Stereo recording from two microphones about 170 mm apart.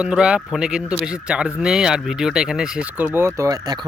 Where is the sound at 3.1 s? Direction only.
15° right (ahead or behind).